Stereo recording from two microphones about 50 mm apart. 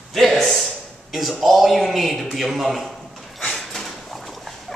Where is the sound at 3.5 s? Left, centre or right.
Centre.